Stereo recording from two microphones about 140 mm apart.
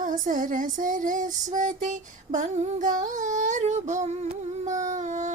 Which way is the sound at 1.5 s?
65° right (ahead or behind).